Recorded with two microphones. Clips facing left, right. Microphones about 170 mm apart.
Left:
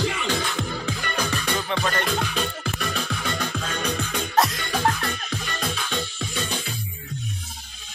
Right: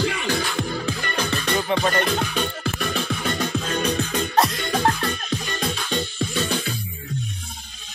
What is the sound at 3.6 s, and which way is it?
Music, 35° right (ahead or behind).